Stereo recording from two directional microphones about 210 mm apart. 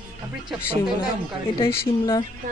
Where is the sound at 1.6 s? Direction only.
20° left (ahead or behind).